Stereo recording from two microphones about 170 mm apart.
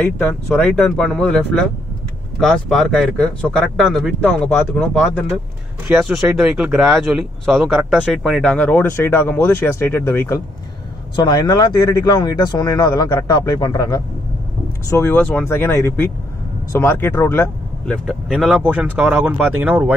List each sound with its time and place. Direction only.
0.0 s speech: 5° left (ahead or behind); by 19.9 s 10° right (ahead or behind)